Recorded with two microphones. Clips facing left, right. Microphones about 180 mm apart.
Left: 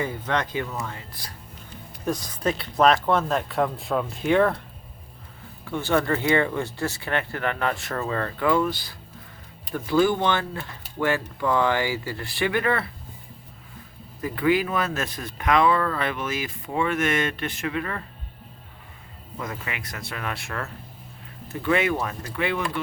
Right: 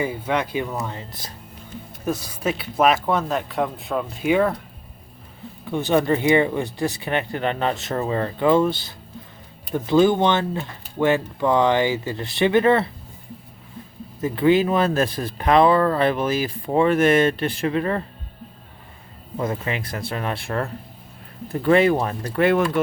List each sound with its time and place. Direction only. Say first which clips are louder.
0.0 s speech: right 3 dB; 10° right (ahead or behind)
2.0 s speech: right 1 dB; 5° right (ahead or behind)
5.6 s speech: right 4 dB; 20° right (ahead or behind)
14.2 s speech: right 5 dB; 25° right (ahead or behind)
19.4 s speech: right 8 dB; 30° right (ahead or behind); by 22.8 s 50° right (ahead or behind)